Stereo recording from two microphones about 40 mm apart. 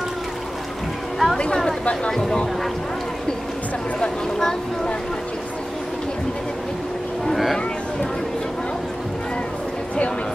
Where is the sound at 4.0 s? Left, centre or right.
Centre.